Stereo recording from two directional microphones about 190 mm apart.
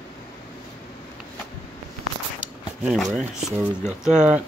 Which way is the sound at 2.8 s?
Centre (ahead or behind).